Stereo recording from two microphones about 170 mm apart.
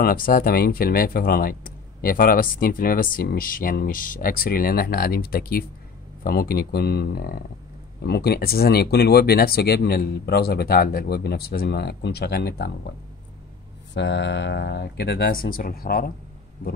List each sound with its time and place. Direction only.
0.0 s speech: 55° left (ahead or behind)
13.9 s speech: 90° left; by 16.1 s 60° left (ahead or behind)